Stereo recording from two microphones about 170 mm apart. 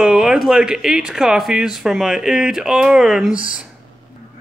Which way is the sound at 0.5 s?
5° right (ahead or behind).